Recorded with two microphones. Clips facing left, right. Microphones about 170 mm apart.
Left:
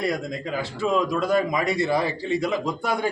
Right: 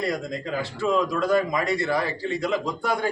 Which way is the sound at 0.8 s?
15° left (ahead or behind).